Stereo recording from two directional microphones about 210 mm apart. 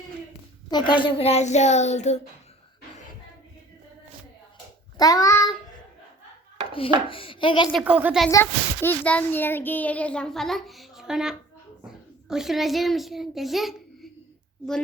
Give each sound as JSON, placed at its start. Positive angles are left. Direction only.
{"t": 0.7, "sound": "a child's voice", "side_deg": 20}
{"t": 4.9, "sound": "a child's voice", "side_deg": 15}
{"t": 6.7, "sound": "a child's voice", "side_deg": 25}
{"t": 7.7, "sound": "a child's voice", "side_deg": -5}
{"t": 8.3, "sound": "a child's voice", "side_deg": 10}